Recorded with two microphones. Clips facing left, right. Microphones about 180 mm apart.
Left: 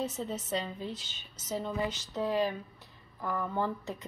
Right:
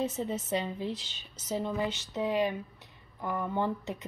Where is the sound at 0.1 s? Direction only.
10° right (ahead or behind).